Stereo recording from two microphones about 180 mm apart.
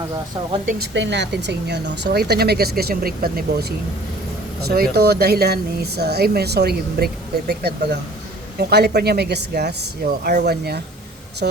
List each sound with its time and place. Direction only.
0.8 s speech: 75° right (ahead or behind); by 10.8 s 60° right (ahead or behind)